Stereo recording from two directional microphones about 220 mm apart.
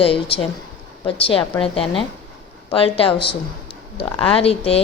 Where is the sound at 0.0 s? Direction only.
25° left (ahead or behind).